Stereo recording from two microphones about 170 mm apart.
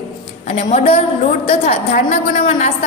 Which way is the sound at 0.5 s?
45° left (ahead or behind).